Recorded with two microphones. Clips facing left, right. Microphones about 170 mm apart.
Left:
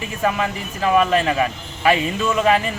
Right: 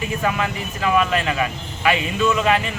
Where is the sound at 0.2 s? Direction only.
30° left (ahead or behind).